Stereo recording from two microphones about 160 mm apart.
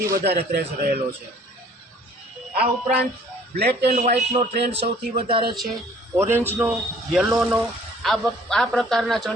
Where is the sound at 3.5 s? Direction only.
90° right.